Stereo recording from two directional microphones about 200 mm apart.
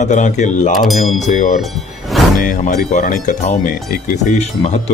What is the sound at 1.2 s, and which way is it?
Speech, 40° left (ahead or behind).